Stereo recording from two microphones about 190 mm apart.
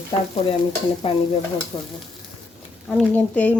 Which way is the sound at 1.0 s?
30° left (ahead or behind).